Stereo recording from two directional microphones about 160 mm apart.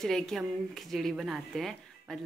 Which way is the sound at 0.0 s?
Centre (ahead or behind).